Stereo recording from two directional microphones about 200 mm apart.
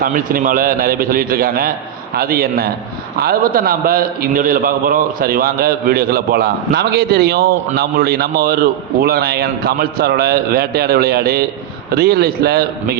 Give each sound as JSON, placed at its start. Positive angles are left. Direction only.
{"t": 0.0, "sound": "a man's voice", "side_deg": -45}